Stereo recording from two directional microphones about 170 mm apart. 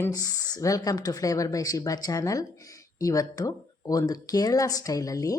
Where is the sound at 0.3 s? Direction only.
20° left (ahead or behind).